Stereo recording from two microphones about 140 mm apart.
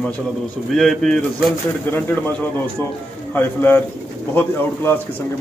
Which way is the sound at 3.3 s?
15° left (ahead or behind).